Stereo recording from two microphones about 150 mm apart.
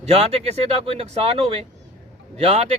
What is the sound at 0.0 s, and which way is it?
Speech, 45° right (ahead or behind).